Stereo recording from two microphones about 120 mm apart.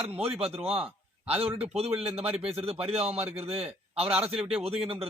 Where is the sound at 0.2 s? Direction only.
55° right (ahead or behind).